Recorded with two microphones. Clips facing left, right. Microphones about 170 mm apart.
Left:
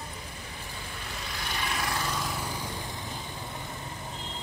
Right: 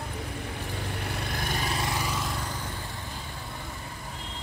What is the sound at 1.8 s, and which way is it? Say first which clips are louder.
Vehicle: right 2 dB; 15° right (ahead or behind).